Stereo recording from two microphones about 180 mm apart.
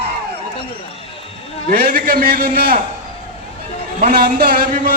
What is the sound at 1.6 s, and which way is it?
A man's voice, 55° right (ahead or behind).